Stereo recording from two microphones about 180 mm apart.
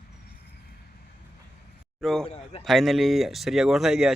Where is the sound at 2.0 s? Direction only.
Centre (ahead or behind).